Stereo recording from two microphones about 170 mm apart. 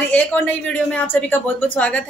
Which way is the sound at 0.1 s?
10° left (ahead or behind).